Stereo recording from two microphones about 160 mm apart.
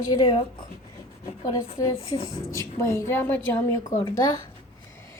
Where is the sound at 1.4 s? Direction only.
20° left (ahead or behind).